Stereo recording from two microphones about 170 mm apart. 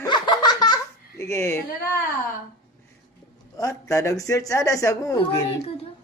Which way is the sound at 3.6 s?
20° left (ahead or behind).